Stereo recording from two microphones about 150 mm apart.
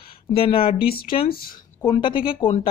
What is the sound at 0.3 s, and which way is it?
Speech, 40° left (ahead or behind).